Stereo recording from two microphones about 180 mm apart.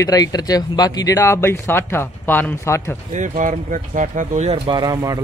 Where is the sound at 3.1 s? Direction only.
45° right (ahead or behind).